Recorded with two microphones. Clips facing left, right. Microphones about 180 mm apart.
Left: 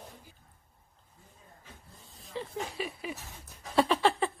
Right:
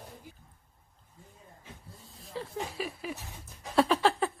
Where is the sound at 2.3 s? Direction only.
Centre (ahead or behind).